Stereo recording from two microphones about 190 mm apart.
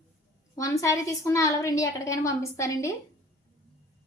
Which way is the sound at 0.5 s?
15° left (ahead or behind).